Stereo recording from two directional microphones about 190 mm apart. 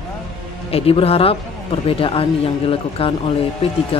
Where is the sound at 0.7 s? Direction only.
30° left (ahead or behind).